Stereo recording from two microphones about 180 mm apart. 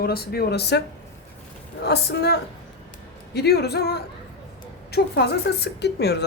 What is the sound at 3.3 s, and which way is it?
Speech, 65° left (ahead or behind).